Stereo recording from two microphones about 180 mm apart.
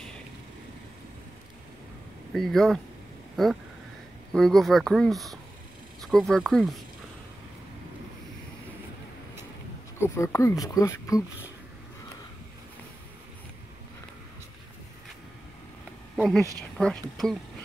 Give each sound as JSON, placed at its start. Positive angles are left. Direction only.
{"t": 2.3, "sound": "speech", "side_deg": 0}
{"t": 4.3, "sound": "speech", "side_deg": 5}
{"t": 9.9, "sound": "speech", "side_deg": 15}
{"t": 16.2, "sound": "speech", "side_deg": 0}